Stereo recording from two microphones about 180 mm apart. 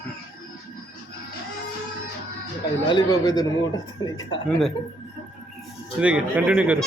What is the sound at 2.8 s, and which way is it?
Speech, 25° left (ahead or behind).